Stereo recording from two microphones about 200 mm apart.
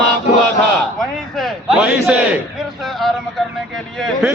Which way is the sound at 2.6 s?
Centre (ahead or behind).